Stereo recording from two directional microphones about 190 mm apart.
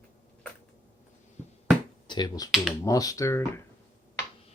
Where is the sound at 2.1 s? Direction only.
20° left (ahead or behind).